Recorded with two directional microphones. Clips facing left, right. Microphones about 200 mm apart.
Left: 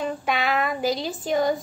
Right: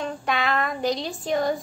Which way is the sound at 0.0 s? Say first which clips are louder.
Left 1 dB; 5° left (ahead or behind).